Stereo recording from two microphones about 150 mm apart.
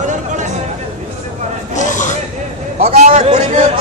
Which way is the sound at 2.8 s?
50° right (ahead or behind).